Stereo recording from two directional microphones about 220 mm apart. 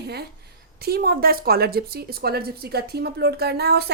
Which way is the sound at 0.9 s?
45° right (ahead or behind).